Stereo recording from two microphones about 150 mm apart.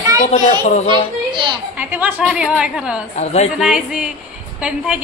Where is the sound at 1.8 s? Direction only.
10° right (ahead or behind).